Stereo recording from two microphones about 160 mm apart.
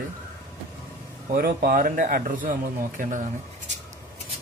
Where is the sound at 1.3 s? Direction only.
65° right (ahead or behind).